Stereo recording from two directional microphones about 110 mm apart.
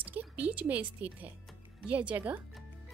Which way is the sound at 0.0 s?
15° right (ahead or behind).